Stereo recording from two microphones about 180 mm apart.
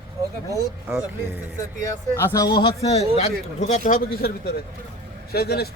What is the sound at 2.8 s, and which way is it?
Speech, 35° left (ahead or behind).